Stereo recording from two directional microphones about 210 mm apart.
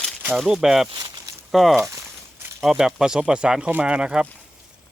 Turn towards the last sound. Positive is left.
turn(degrees=-5)  # may be behind; listen again after turning